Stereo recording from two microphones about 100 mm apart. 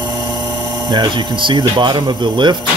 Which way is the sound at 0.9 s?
50° right (ahead or behind).